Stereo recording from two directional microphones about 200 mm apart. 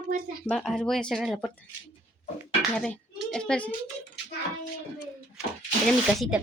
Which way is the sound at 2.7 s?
5° left (ahead or behind).